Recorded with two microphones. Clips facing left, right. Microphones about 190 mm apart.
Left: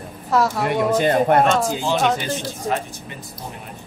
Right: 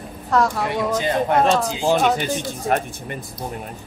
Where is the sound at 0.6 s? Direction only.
55° left (ahead or behind).